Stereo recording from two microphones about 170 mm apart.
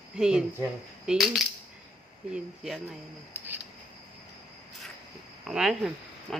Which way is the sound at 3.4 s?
10° right (ahead or behind).